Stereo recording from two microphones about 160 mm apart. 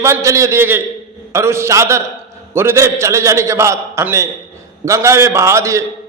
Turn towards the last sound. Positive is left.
turn(degrees=-20)  # may be behind; listen again after turning